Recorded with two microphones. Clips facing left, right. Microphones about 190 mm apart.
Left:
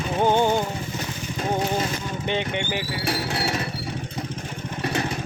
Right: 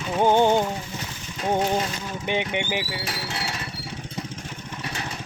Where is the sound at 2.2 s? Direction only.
15° right (ahead or behind).